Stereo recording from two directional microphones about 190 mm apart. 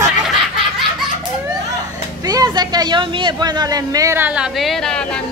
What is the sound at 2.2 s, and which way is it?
Speech, 20° right (ahead or behind).